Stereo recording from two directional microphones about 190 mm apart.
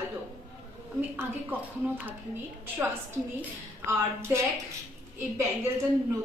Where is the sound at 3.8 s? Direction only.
15° right (ahead or behind).